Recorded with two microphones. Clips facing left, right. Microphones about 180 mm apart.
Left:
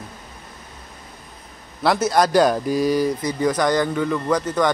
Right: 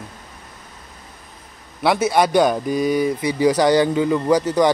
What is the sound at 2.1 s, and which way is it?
Speech, centre (ahead or behind).